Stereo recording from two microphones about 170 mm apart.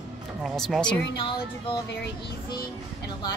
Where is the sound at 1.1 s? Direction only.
30° left (ahead or behind).